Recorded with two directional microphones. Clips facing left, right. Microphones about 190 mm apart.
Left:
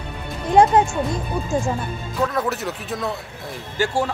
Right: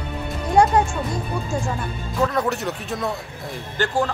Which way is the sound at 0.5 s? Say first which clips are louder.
Left 2 dB; 20° left (ahead or behind).